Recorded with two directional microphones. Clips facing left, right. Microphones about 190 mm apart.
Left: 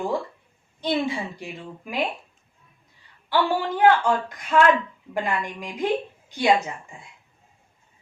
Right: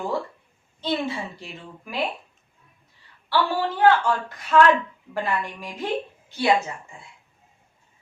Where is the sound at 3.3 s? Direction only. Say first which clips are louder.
Left 1 dB; 15° left (ahead or behind).